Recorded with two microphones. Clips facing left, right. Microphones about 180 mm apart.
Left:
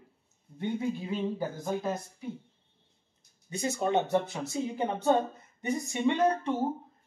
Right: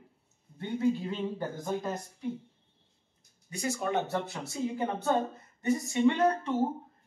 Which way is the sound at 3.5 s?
25° left (ahead or behind).